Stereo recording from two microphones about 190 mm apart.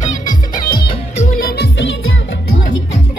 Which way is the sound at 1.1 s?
45° left (ahead or behind).